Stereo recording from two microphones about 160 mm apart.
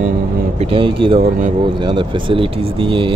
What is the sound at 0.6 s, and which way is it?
Speech, 35° right (ahead or behind).